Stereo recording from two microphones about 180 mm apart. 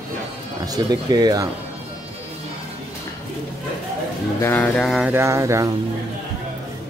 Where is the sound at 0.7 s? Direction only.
20° right (ahead or behind).